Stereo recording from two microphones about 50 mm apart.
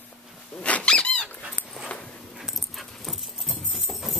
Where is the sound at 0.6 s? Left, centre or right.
Left.